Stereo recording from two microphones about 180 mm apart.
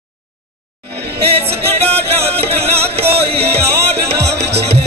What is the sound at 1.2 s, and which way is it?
Music, 35° right (ahead or behind).